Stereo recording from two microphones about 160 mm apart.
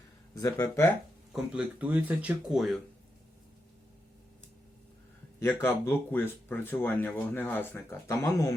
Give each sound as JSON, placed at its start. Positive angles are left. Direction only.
{"t": 0.3, "sound": "speech", "side_deg": 20}
{"t": 1.3, "sound": "speech", "side_deg": -10}
{"t": 5.4, "sound": "speech", "side_deg": 15}